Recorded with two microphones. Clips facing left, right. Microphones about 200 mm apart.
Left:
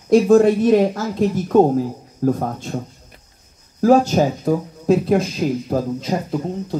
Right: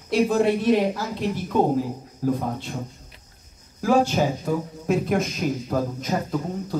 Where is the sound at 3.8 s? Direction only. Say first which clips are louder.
Left 6 dB; 40° left (ahead or behind).